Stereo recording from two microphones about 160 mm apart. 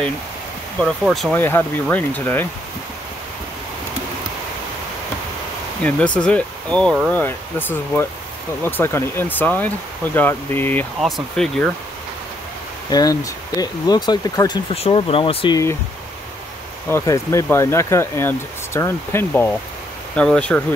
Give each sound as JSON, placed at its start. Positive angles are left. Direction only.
{"t": 1.0, "sound": "speech", "side_deg": 0}
{"t": 1.3, "sound": "speech", "side_deg": 10}
{"t": 5.8, "sound": "speech", "side_deg": 10}
{"t": 11.0, "sound": "speech", "side_deg": 0}
{"t": 12.9, "sound": "speech", "side_deg": 25}
{"t": 14.7, "sound": "speech", "side_deg": 35}
{"t": 16.9, "sound": "speech", "side_deg": 20}